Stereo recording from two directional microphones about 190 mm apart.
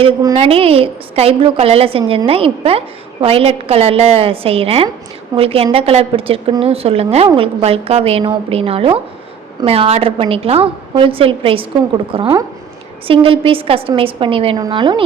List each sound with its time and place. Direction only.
0.0 s a woman's voice: 20° right (ahead or behind)
0.3 s a woman's voice: 30° right (ahead or behind)